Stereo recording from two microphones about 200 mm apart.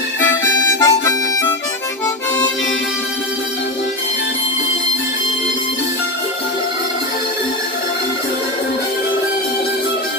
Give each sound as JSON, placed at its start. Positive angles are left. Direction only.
{"t": 0.4, "sound": "harmonica", "side_deg": 15}